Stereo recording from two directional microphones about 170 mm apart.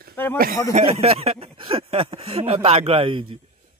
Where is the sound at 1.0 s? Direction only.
35° right (ahead or behind).